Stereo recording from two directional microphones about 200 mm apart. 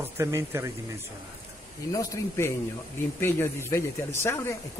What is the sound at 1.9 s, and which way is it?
Speech, 15° left (ahead or behind).